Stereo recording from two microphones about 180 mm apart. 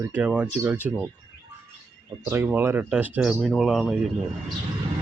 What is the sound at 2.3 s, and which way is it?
Speech, 15° right (ahead or behind).